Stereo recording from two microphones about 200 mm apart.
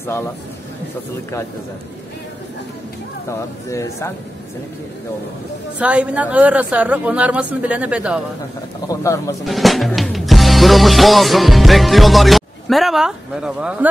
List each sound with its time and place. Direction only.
3.3 s speech: 15° left (ahead or behind)
5.8 s speech: 5° right (ahead or behind)
8.8 s speech: 15° left (ahead or behind)
9.4 s music: centre (ahead or behind)